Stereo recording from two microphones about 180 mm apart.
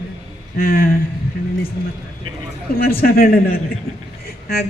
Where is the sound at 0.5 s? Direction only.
55° left (ahead or behind).